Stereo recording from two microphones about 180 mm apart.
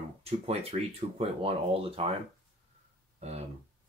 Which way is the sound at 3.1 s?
35° right (ahead or behind).